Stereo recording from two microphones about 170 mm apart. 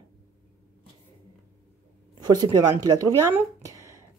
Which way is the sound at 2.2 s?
25° right (ahead or behind).